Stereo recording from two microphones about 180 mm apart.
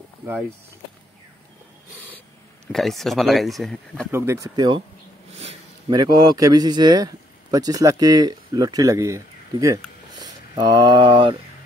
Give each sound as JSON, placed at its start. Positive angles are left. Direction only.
{"t": 2.7, "sound": "speech", "side_deg": 0}
{"t": 4.1, "sound": "a man's voice", "side_deg": -15}
{"t": 5.9, "sound": "a man's voice", "side_deg": -25}